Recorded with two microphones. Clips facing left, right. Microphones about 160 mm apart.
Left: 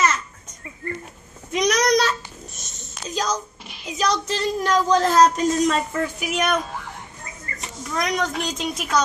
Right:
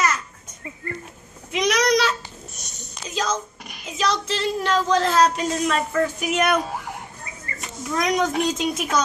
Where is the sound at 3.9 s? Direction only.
45° left (ahead or behind).